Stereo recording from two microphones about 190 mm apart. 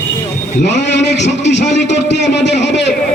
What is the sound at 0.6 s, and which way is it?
A man's voice, 65° left (ahead or behind).